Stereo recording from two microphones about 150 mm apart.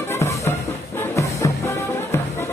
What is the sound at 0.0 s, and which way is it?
Music, 15° left (ahead or behind).